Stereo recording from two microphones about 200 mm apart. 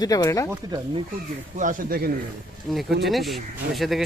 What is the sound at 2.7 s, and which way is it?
Speech, centre (ahead or behind).